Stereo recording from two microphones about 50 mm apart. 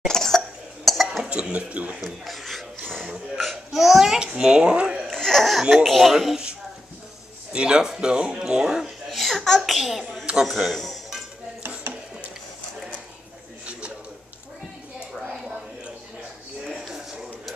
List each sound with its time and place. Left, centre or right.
0.1 s cough: centre
1.3 s a child's voice: right
2.0 s a child's voice: centre
4.2 s a child's voice: centre
5.1 s a child's voice: centre
7.5 s speech: centre
9.2 s a child's voice: centre
13.7 s a sound: right
16.6 s a sound: centre